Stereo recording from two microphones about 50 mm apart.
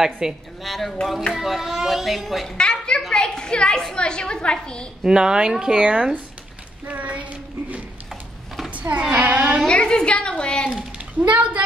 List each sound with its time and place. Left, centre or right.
0.2 s speech: centre
0.7 s speech: centre
2.5 s a sound: centre
3.1 s a child's voice: centre
5.0 s speech: centre
6.9 s child singing: right
8.6 s a sound: right
9.2 s a child's voice: right
9.7 s a woman's voice: centre
11.0 s a woman's voice: right